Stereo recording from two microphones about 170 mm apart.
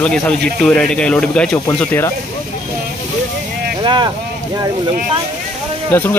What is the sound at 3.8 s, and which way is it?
Speech, 25° right (ahead or behind).